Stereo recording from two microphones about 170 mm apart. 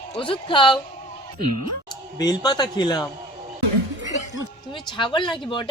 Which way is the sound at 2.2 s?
25° left (ahead or behind).